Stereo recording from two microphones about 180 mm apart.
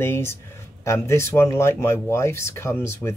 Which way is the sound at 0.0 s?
15° left (ahead or behind).